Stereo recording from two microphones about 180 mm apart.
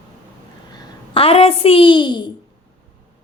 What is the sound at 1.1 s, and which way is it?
A woman's voice, 30° left (ahead or behind).